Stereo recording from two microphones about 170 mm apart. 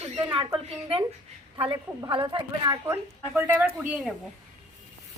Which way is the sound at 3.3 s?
10° right (ahead or behind).